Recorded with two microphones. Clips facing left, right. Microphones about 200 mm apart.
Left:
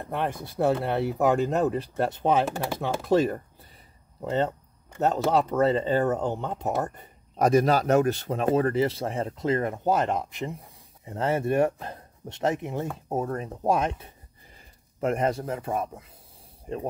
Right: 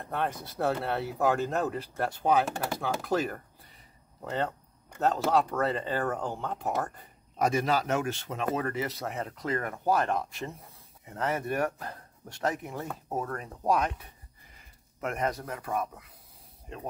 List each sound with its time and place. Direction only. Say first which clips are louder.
0.1 s speech: left 2 dB; 15° left (ahead or behind)
7.3 s speech: left 6 dB; 40° left (ahead or behind); by 10.7 s 15° left (ahead or behind)
11.1 s speech: left 5 dB; 25° left (ahead or behind)